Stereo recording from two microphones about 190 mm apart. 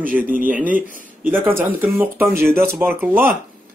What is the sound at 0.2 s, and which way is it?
Speech, 45° right (ahead or behind).